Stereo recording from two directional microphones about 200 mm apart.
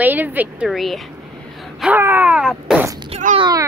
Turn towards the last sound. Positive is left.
turn(degrees=-20)  # may be behind; listen again after turning